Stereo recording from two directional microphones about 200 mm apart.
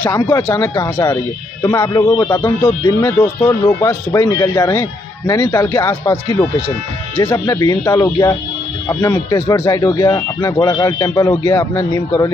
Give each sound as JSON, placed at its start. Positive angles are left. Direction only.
{"t": 0.0, "sound": "speech", "side_deg": 15}
{"t": 7.2, "sound": "speech", "side_deg": 20}